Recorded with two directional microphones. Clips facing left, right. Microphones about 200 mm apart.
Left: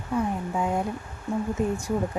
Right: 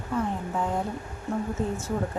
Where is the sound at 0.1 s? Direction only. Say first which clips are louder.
Left 2 dB; 15° left (ahead or behind).